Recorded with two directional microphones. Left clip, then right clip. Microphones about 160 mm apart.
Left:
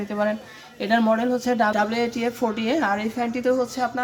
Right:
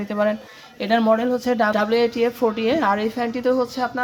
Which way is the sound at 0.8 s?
30° right (ahead or behind).